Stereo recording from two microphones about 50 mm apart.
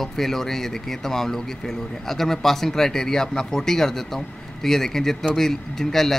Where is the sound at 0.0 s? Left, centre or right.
Centre.